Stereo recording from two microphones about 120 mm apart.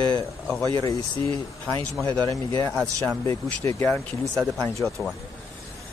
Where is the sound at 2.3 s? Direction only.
30° left (ahead or behind).